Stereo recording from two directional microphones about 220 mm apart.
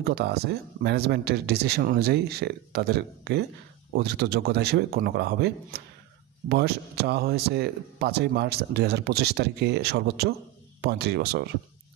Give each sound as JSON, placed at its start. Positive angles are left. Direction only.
{"t": 0.0, "sound": "speech", "side_deg": -45}